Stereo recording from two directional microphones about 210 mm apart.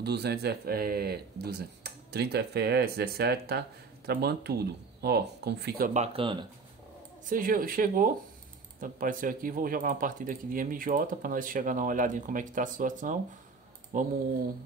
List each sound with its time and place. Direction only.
0.0 s speech: 50° right (ahead or behind)
5.9 s speech: 25° right (ahead or behind)
7.2 s speech: 40° right (ahead or behind)